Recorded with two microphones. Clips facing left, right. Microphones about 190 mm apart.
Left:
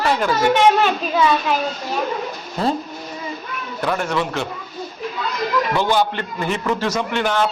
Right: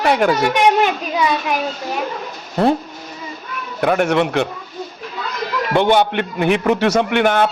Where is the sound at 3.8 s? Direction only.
65° right (ahead or behind).